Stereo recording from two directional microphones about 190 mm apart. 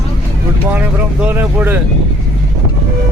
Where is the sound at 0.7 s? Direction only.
10° right (ahead or behind).